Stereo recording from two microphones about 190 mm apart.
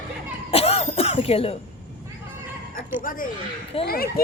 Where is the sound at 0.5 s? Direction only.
30° left (ahead or behind).